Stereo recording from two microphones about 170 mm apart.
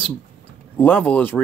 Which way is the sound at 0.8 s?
10° left (ahead or behind).